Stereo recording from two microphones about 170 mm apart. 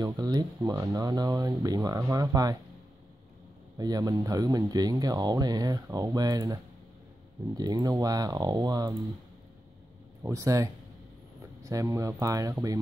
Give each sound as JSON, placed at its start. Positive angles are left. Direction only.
{"t": 0.0, "sound": "speech", "side_deg": -20}
{"t": 3.7, "sound": "speech", "side_deg": -20}
{"t": 10.2, "sound": "speech", "side_deg": -20}